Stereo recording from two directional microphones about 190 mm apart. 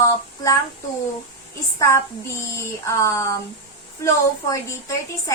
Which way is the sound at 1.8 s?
15° left (ahead or behind).